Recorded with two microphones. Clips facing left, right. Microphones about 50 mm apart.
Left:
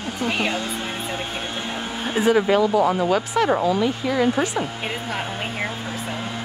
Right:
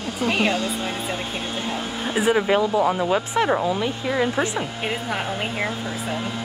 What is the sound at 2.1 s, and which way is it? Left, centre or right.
Speech, centre.